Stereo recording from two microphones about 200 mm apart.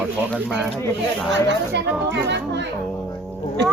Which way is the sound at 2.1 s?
60° right (ahead or behind).